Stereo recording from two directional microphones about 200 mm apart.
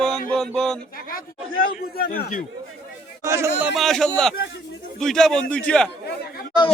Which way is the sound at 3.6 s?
Centre (ahead or behind).